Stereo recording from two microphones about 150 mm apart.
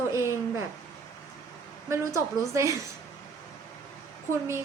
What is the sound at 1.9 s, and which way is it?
Speech, 20° right (ahead or behind).